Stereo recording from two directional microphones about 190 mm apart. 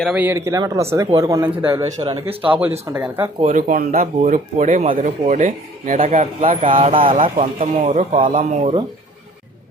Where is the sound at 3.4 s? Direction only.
40° right (ahead or behind).